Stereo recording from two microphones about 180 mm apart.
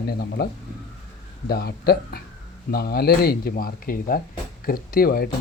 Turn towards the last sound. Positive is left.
turn(degrees=55)  # may be behind; listen again after turning